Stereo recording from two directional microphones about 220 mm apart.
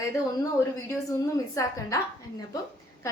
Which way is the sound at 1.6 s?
15° left (ahead or behind).